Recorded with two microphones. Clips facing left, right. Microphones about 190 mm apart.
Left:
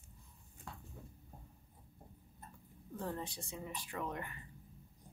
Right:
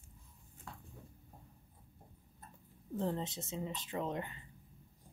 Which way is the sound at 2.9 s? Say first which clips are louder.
Right 5 dB; 20° right (ahead or behind).